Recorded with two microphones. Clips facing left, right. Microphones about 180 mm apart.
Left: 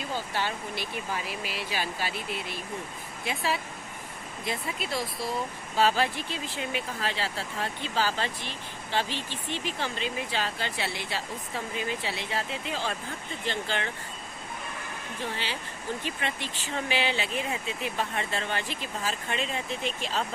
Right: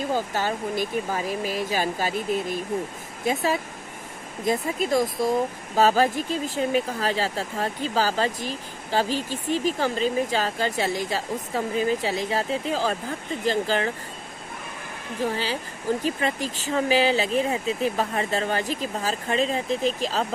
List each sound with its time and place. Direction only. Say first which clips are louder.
0.1 s speech: right 3 dB; 45° right (ahead or behind)
15.2 s speech: right 9 dB; 40° right (ahead or behind)